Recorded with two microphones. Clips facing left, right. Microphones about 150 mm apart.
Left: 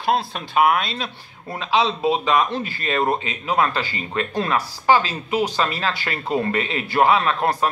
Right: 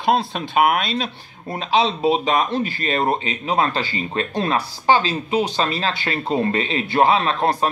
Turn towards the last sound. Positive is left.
turn(degrees=-30)  # may be behind; listen again after turning